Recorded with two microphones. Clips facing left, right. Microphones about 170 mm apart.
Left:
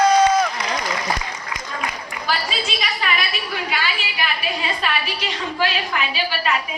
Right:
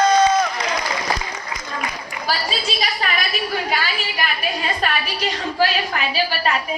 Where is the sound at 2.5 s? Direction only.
35° right (ahead or behind).